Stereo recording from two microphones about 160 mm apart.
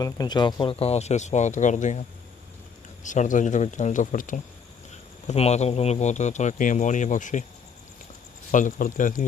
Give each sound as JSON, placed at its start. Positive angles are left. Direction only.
{"t": 0.0, "sound": "speech", "side_deg": 25}
{"t": 5.3, "sound": "speech", "side_deg": 40}
{"t": 8.5, "sound": "speech", "side_deg": 55}